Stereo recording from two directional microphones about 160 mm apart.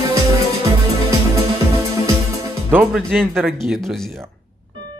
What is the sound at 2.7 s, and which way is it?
Speech, 10° right (ahead or behind).